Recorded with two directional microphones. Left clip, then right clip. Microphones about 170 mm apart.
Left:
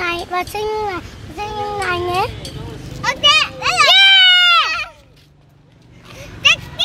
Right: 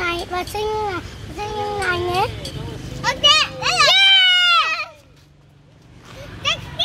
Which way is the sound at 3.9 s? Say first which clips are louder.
Left 4 dB; 40° left (ahead or behind).